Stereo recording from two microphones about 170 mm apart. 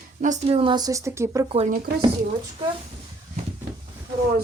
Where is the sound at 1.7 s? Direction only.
65° right (ahead or behind).